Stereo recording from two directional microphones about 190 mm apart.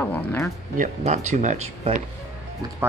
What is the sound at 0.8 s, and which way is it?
Speech, 40° right (ahead or behind).